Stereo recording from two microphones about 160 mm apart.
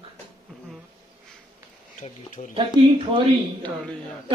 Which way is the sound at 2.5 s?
30° right (ahead or behind).